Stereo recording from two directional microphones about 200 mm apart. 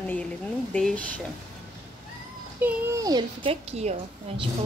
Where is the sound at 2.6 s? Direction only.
15° right (ahead or behind).